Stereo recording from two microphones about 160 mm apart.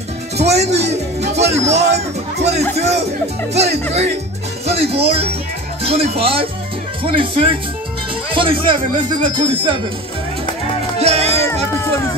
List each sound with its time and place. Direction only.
0.4 s speech: 45° right (ahead or behind)
11.0 s music: 40° right (ahead or behind)